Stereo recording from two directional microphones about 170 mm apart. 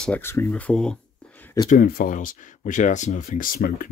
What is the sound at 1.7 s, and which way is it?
Speech, 60° left (ahead or behind).